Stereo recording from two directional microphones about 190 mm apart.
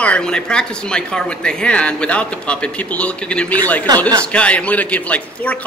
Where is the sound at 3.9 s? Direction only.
20° right (ahead or behind).